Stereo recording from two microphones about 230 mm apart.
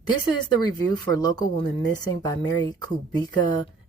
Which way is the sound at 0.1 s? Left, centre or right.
Centre.